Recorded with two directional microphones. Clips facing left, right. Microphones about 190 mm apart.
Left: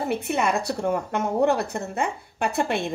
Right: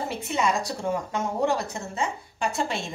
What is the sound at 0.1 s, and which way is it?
Speech, 60° left (ahead or behind).